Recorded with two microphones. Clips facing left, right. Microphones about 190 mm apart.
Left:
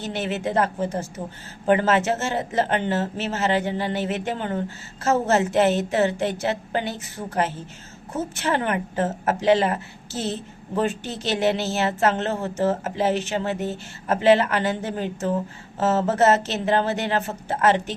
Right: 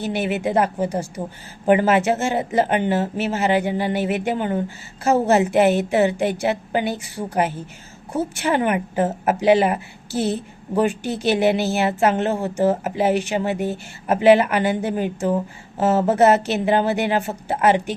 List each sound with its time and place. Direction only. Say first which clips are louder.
0.0 s a woman's voice: right 4 dB; 10° right (ahead or behind)